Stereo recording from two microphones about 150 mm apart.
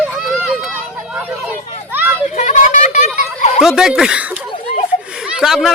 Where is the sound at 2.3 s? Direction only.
55° left (ahead or behind).